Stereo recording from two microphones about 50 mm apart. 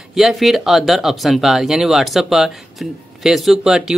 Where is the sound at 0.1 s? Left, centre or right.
Centre.